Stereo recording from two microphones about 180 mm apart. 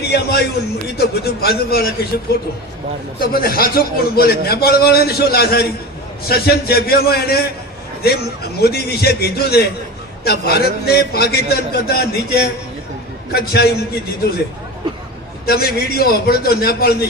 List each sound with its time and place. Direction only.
0.0 s a man's voice: 65° left (ahead or behind)
3.2 s a man's voice: 55° left (ahead or behind)
15.4 s a man's voice: 60° left (ahead or behind)